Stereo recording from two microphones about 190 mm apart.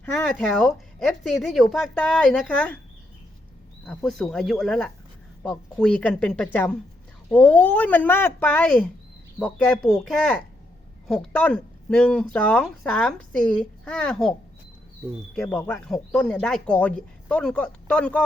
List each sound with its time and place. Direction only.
0.0 s speech: 5° left (ahead or behind)
3.8 s speech: 5° left (ahead or behind)
15.4 s speech: 5° left (ahead or behind)